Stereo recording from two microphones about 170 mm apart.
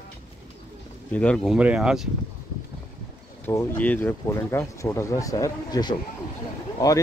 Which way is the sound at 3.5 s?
15° left (ahead or behind).